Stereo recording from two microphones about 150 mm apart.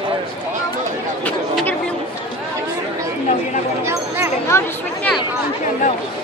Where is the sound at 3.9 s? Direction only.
15° right (ahead or behind).